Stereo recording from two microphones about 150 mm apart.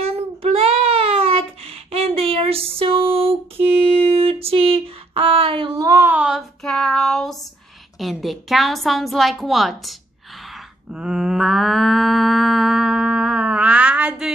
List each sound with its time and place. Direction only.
0.0 s child singing: 40° right (ahead or behind)
5.8 s child singing: 20° right (ahead or behind); by 7.3 s 5° left (ahead or behind)
8.0 s a woman's voice: centre (ahead or behind)
10.5 s mantra: 5° right (ahead or behind)